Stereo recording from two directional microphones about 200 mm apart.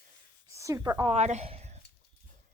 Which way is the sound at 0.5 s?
15° right (ahead or behind).